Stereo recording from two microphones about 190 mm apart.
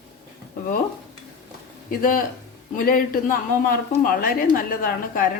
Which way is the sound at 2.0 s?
50° left (ahead or behind).